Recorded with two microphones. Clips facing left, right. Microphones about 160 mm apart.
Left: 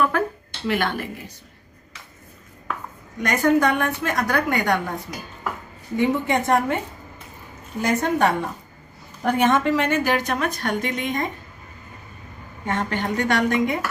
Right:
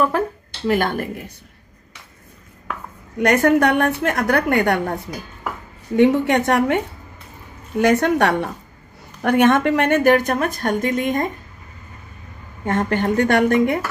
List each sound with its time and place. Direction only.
0.7 s a woman's voice: 45° right (ahead or behind)
3.2 s a woman's voice: 65° right (ahead or behind)
5.9 s a woman's voice: 75° right (ahead or behind)
7.8 s a woman's voice: 75° right (ahead or behind)
9.2 s a woman's voice: 65° right (ahead or behind); by 11.2 s 45° right (ahead or behind)
12.6 s a woman's voice: 50° right (ahead or behind)